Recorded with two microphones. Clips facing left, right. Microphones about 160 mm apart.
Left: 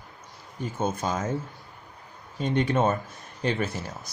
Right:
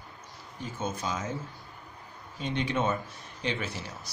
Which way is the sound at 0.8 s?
50° left (ahead or behind).